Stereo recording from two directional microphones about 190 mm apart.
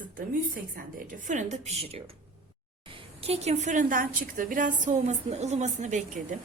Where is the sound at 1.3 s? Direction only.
40° right (ahead or behind).